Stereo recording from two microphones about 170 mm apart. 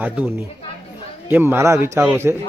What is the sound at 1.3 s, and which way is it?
Speech, 15° right (ahead or behind).